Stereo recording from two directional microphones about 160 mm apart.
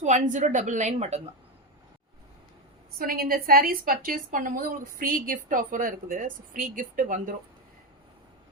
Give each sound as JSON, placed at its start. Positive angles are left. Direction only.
{"t": 0.0, "sound": "a woman's voice", "side_deg": -50}
{"t": 3.0, "sound": "a woman's voice", "side_deg": -65}